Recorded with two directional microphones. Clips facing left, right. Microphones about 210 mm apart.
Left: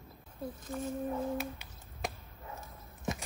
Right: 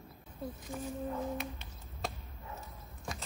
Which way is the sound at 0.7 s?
15° right (ahead or behind).